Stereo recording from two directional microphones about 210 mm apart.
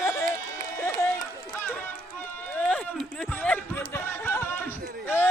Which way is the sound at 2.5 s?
5° left (ahead or behind).